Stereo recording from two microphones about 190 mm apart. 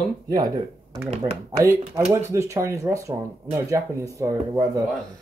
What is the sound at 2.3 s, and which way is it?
Speech, 15° right (ahead or behind).